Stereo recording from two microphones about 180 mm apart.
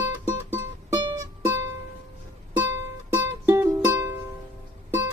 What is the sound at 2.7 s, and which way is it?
Music, 10° right (ahead or behind).